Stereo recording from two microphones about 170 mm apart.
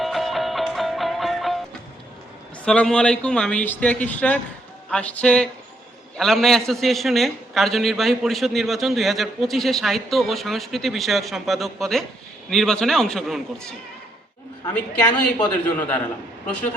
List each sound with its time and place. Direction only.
0.0 s music: centre (ahead or behind)
2.6 s a man's voice: 5° left (ahead or behind)